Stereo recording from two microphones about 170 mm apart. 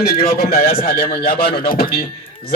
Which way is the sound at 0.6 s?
60° left (ahead or behind).